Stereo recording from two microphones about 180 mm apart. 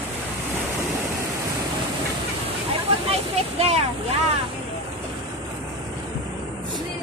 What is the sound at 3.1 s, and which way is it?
Speech, 35° right (ahead or behind).